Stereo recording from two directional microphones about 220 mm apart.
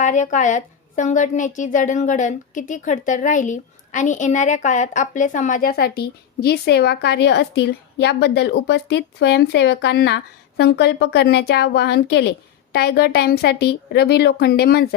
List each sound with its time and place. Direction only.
0.0 s a woman's voice: 35° left (ahead or behind)